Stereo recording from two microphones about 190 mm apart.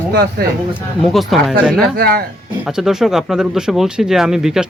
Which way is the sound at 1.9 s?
55° right (ahead or behind).